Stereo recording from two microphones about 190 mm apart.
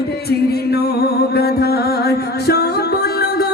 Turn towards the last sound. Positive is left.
turn(degrees=55)  # may be behind; listen again after turning